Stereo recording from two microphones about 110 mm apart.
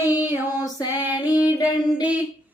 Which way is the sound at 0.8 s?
20° right (ahead or behind).